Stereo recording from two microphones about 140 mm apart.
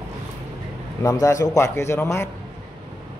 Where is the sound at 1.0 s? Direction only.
25° left (ahead or behind).